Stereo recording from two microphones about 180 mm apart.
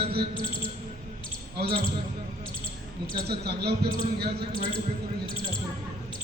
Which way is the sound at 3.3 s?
65° right (ahead or behind).